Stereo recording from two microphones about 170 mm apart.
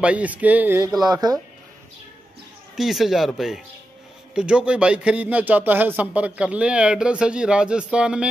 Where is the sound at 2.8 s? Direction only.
Centre (ahead or behind).